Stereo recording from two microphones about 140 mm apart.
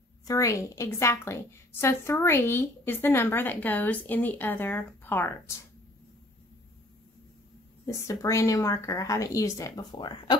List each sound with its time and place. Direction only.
0.2 s a woman's voice: 25° left (ahead or behind)
7.8 s speech: 20° left (ahead or behind)